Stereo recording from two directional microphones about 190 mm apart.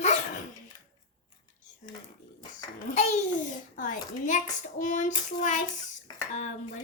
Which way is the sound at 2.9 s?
35° left (ahead or behind).